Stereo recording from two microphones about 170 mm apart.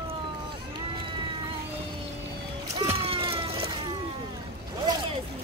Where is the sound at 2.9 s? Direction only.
35° right (ahead or behind).